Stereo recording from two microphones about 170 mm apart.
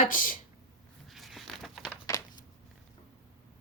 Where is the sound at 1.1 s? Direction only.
Centre (ahead or behind).